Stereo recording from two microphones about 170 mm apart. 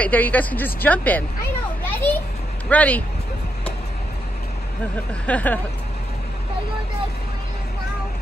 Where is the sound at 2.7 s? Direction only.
10° left (ahead or behind).